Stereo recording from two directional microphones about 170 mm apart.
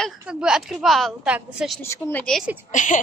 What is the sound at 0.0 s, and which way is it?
A woman's voice, 5° right (ahead or behind).